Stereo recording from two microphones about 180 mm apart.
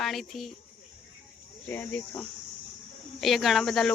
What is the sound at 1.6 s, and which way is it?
Cricket, 10° left (ahead or behind).